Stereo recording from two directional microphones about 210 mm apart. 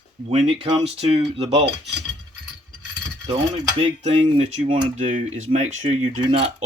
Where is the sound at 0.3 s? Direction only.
25° right (ahead or behind).